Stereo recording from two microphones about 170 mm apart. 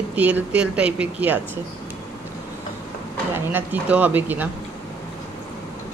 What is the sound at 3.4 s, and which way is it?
Speech, 10° right (ahead or behind).